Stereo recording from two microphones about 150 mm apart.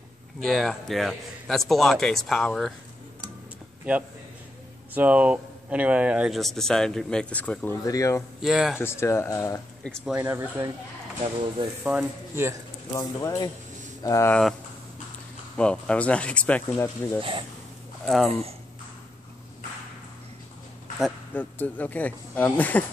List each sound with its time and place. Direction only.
0.4 s speech: centre (ahead or behind)
3.9 s speech: 10° right (ahead or behind); by 8.2 s 20° left (ahead or behind)
8.4 s speech: centre (ahead or behind)
8.7 s speech: 15° left (ahead or behind)
9.8 s speech: 5° left (ahead or behind)
10.1 s speech: 15° right (ahead or behind)
11.8 s speech: 5° right (ahead or behind)
12.9 s speech: 20° left (ahead or behind)
15.5 s speech: 5° left (ahead or behind)
17.2 s speech: 35° right (ahead or behind)
18.0 s speech: centre (ahead or behind)
21.3 s speech: 10° left (ahead or behind)